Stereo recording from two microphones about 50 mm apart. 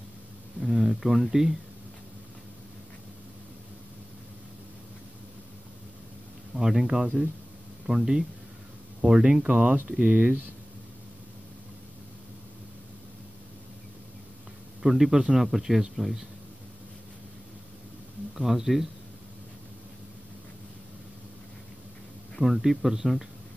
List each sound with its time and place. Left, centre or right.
0.7 s speech: centre
6.5 s speech: centre; by 10.4 s right
14.8 s speech: centre
18.3 s speech: centre
22.4 s speech: centre